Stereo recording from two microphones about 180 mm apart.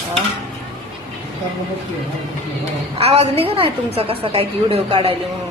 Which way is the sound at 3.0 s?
35° right (ahead or behind).